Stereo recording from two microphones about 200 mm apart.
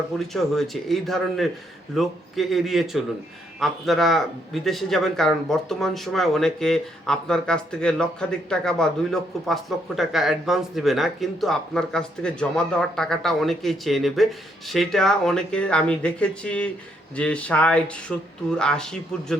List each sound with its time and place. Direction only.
0.2 s speech: centre (ahead or behind)